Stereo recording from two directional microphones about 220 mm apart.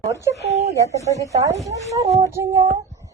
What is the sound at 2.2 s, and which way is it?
Child singing, 15° right (ahead or behind).